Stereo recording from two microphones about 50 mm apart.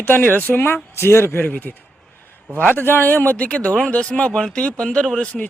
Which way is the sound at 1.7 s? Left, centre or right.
Centre.